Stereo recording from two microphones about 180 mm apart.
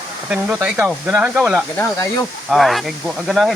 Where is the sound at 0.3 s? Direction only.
5° right (ahead or behind).